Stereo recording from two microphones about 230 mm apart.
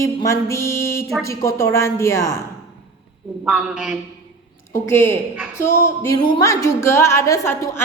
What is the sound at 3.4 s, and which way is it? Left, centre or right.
Speech, centre.